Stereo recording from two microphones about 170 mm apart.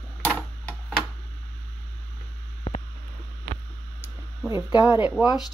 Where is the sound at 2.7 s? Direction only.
40° left (ahead or behind).